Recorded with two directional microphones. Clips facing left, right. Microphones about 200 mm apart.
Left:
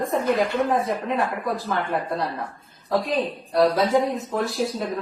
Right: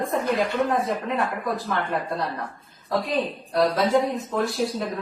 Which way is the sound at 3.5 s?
Centre (ahead or behind).